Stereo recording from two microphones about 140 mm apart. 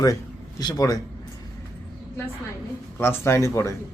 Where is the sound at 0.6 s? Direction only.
25° left (ahead or behind).